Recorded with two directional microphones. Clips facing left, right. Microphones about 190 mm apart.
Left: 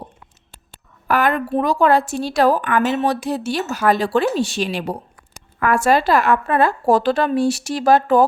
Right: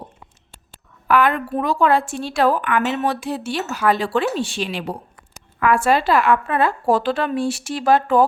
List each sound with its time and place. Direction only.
1.0 s a woman's voice: 45° left (ahead or behind)